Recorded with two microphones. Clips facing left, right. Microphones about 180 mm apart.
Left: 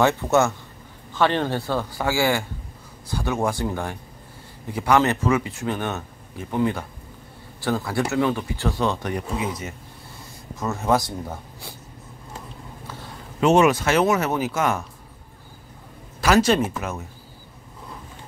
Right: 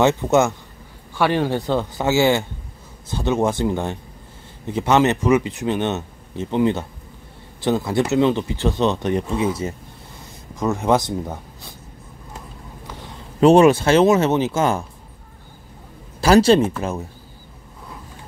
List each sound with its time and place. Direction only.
0.0 s speech: 15° right (ahead or behind)
10.5 s speech: 15° right (ahead or behind)
13.4 s speech: 35° right (ahead or behind)
16.2 s speech: 30° right (ahead or behind)